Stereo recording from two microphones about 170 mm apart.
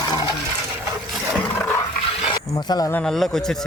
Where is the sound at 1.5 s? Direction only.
15° left (ahead or behind).